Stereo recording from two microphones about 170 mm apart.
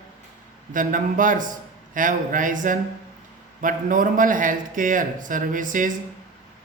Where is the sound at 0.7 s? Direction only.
50° right (ahead or behind).